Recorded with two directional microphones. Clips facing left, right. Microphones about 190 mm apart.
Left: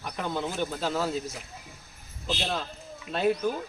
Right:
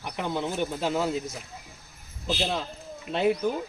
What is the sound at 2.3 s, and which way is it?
A man's voice, 10° right (ahead or behind).